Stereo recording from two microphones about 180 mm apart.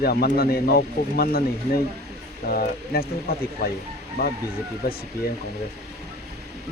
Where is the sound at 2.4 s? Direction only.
55° left (ahead or behind).